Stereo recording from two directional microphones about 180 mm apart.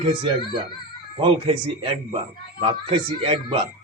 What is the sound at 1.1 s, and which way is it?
Speech, 30° right (ahead or behind).